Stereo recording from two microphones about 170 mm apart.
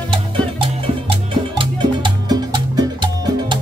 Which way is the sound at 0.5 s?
30° right (ahead or behind).